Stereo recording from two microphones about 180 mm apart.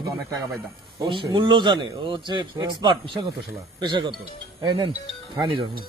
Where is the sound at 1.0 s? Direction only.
25° right (ahead or behind).